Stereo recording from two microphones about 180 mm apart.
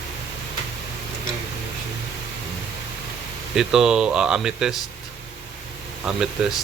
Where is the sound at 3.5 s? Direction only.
5° right (ahead or behind).